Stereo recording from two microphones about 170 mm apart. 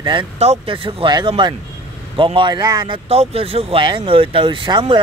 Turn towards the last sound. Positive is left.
turn(degrees=-30)  # may be behind; listen again after turning